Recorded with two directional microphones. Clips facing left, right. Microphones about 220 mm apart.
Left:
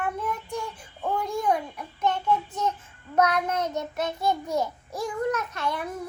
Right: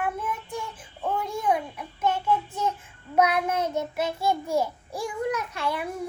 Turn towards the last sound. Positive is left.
turn(degrees=-10)  # may be behind; listen again after turning